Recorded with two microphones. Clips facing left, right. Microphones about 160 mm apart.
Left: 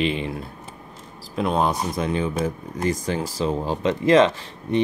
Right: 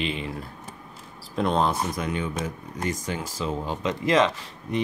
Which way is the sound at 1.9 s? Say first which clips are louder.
Left 5 dB; 30° left (ahead or behind).